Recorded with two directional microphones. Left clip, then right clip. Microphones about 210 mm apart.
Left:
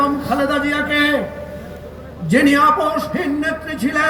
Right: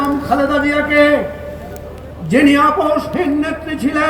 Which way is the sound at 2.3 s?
45° left (ahead or behind).